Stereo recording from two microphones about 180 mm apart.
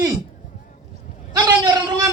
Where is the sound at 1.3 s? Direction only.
25° right (ahead or behind).